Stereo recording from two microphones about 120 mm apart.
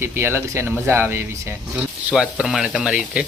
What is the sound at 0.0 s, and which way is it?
Speech, 20° right (ahead or behind).